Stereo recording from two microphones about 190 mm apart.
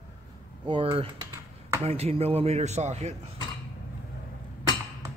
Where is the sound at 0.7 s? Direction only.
25° right (ahead or behind).